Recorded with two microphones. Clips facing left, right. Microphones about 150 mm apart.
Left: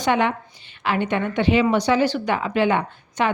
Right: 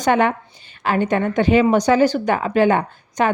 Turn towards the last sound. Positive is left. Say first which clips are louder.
# right 3 dB
turn(degrees=-45)  # may be behind; listen again after turning